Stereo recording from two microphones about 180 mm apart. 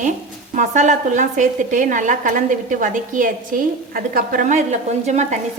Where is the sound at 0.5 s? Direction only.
45° right (ahead or behind).